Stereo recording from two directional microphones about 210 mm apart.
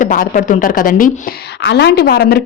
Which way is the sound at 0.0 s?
40° left (ahead or behind).